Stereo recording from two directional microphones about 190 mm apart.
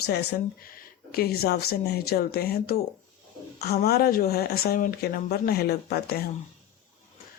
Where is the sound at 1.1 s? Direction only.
55° left (ahead or behind).